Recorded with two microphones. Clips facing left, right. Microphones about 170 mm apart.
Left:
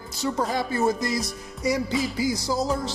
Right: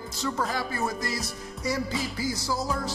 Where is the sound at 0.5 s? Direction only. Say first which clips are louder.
Left 6 dB; 25° left (ahead or behind).